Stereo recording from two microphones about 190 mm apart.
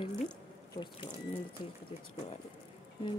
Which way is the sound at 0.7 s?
25° left (ahead or behind).